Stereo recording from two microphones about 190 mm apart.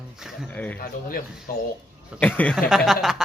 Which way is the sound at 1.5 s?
50° left (ahead or behind).